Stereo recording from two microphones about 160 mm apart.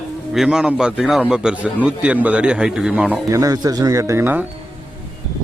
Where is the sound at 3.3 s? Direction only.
20° right (ahead or behind).